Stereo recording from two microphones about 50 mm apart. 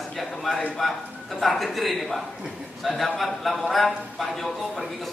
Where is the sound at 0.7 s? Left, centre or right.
Centre.